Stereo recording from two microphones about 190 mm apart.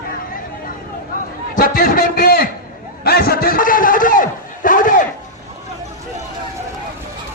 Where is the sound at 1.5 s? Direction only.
45° left (ahead or behind).